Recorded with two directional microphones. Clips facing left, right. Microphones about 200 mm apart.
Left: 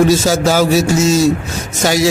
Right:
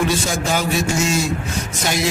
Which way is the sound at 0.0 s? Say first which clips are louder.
Left 9 dB; 40° left (ahead or behind).